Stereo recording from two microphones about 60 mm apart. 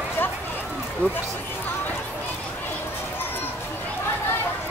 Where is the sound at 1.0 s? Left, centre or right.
Left.